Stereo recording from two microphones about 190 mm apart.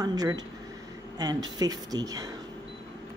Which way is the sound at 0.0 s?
20° right (ahead or behind).